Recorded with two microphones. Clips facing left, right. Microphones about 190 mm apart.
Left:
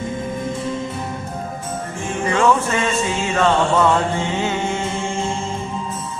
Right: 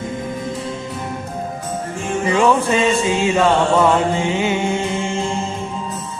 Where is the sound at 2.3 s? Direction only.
15° right (ahead or behind).